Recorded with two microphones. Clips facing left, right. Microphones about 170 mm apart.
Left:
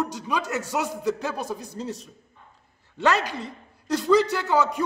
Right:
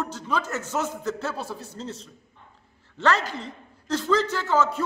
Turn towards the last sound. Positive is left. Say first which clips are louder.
# left 1 dB
turn(degrees=15)  # may be behind; listen again after turning